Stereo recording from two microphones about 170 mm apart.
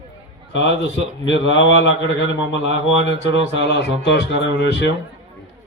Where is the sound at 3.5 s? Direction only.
90° left.